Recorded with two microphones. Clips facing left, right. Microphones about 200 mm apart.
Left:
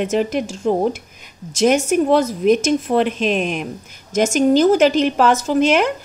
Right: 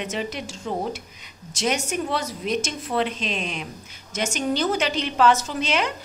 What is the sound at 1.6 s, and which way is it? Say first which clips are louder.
A woman's voice: left 10 dB; 50° left (ahead or behind).